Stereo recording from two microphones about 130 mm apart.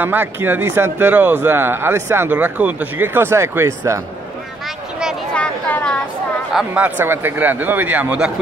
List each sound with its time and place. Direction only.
0.0 s speech: 15° right (ahead or behind)
5.3 s a sound: 10° left (ahead or behind)
6.5 s speech: 10° right (ahead or behind)